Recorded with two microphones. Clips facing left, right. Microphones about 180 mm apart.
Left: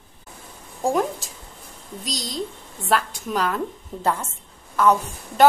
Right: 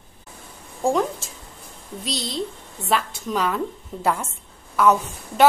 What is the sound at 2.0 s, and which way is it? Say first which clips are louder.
Speech: right 2 dB; 40° left (ahead or behind).